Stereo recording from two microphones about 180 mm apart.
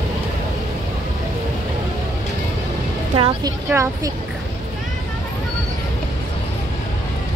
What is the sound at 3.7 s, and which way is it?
Child singing, 15° right (ahead or behind).